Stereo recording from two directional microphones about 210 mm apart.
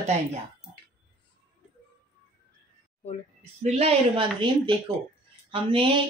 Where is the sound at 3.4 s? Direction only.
30° right (ahead or behind).